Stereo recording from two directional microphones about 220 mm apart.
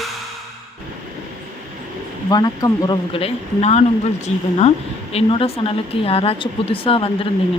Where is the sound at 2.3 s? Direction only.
15° left (ahead or behind).